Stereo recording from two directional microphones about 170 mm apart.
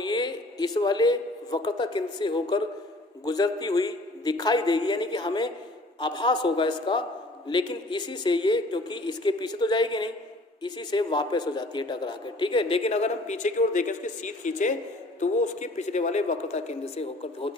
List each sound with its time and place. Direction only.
0.0 s a man's voice: 25° left (ahead or behind)